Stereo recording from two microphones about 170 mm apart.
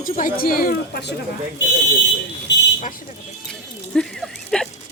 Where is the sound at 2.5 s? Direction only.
90° left.